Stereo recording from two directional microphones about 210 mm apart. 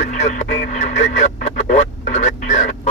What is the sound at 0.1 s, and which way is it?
Radio, 35° left (ahead or behind).